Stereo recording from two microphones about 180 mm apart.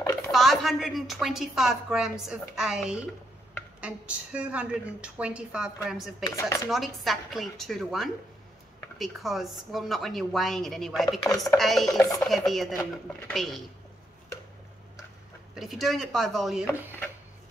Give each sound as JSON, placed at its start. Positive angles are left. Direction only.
{"t": 0.3, "sound": "a woman's voice", "side_deg": 0}
{"t": 6.3, "sound": "speech", "side_deg": 20}
{"t": 6.7, "sound": "a woman's voice", "side_deg": 0}
{"t": 11.9, "sound": "chopping", "side_deg": 20}
{"t": 12.2, "sound": "a woman's voice", "side_deg": 0}
{"t": 15.5, "sound": "a woman's voice", "side_deg": 0}